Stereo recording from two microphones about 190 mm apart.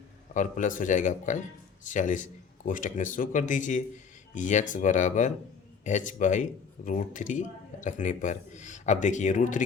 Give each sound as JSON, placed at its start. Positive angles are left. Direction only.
{"t": 0.3, "sound": "speech", "side_deg": 45}